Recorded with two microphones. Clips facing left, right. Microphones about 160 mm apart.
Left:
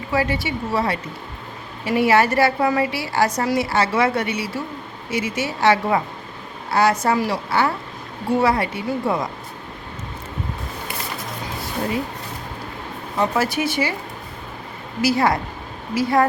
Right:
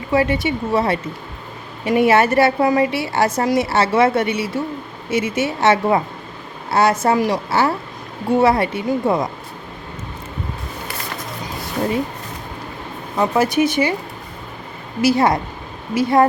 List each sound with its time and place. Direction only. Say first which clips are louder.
0.1 s a woman's voice: right 5 dB; 25° right (ahead or behind)
13.1 s a woman's voice: right 4 dB; 20° right (ahead or behind)
15.0 s a woman's voice: right 3 dB; 20° right (ahead or behind)